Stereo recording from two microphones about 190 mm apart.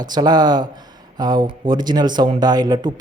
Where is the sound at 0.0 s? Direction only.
20° right (ahead or behind).